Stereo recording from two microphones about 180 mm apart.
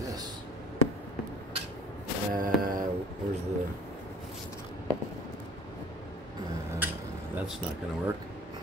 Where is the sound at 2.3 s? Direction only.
50° right (ahead or behind).